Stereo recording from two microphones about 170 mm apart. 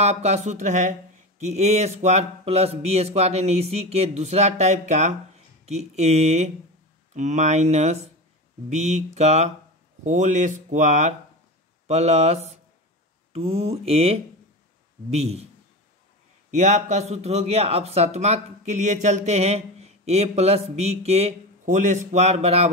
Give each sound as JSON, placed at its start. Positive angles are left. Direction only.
{"t": 0.0, "sound": "speech", "side_deg": -40}
{"t": 16.4, "sound": "speech", "side_deg": -45}